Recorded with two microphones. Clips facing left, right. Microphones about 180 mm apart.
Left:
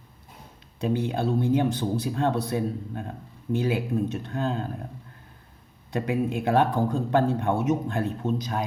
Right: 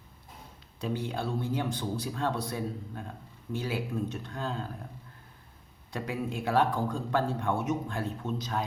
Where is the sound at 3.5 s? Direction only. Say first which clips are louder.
Left 8 dB; 20° left (ahead or behind).